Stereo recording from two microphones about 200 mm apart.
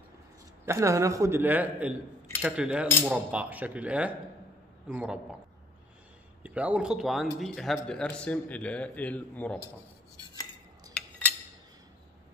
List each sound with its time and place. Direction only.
0.7 s a man's voice: 15° right (ahead or behind)
6.4 s a man's voice: 5° right (ahead or behind)